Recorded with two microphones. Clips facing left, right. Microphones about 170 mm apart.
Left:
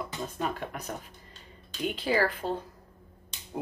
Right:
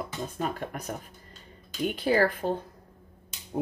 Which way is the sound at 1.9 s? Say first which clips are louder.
Right 3 dB; 45° right (ahead or behind).